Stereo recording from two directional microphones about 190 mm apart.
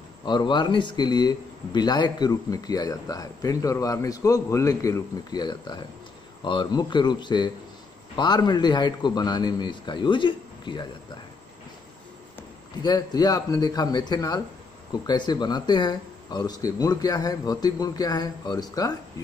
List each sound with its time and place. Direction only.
0.2 s speech: 25° left (ahead or behind)
12.8 s speech: 20° left (ahead or behind)